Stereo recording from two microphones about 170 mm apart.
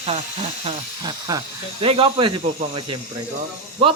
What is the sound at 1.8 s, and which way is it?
Speech, 35° right (ahead or behind).